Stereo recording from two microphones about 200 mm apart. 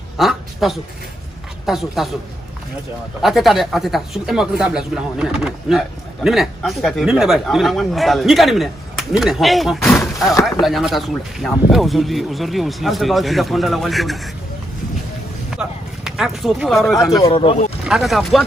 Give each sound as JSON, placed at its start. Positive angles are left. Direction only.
{"t": 0.2, "sound": "a sound", "side_deg": 0}
{"t": 1.7, "sound": "speech", "side_deg": 0}
{"t": 3.2, "sound": "speech", "side_deg": 0}
{"t": 9.8, "sound": "slam", "side_deg": 5}
{"t": 10.6, "sound": "speech", "side_deg": 0}
{"t": 15.5, "sound": "a sound", "side_deg": 0}
{"t": 17.2, "sound": "speech", "side_deg": 25}
{"t": 17.8, "sound": "speech", "side_deg": 0}